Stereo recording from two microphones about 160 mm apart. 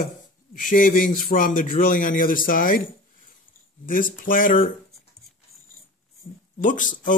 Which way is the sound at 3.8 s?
60° left (ahead or behind).